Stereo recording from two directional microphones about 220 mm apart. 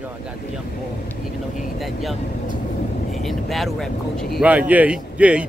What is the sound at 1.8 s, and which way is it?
A man's voice, centre (ahead or behind).